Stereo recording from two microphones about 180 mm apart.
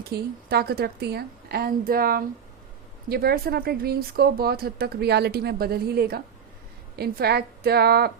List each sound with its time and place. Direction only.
0.0 s speech: 60° right (ahead or behind)